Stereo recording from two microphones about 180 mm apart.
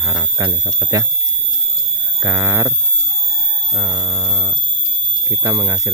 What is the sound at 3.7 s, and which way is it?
Hum, 20° right (ahead or behind).